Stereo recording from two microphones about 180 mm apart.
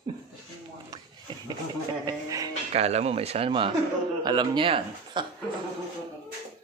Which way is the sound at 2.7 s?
35° right (ahead or behind).